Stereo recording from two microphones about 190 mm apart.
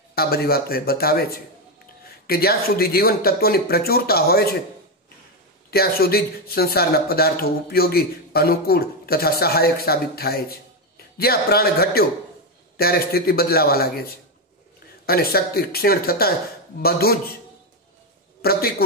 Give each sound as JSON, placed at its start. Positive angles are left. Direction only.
{"t": 0.1, "sound": "speech", "side_deg": 55}
{"t": 2.2, "sound": "speech", "side_deg": 55}
{"t": 5.7, "sound": "speech", "side_deg": 55}
{"t": 15.0, "sound": "speech", "side_deg": 55}
{"t": 18.4, "sound": "a man's voice", "side_deg": 55}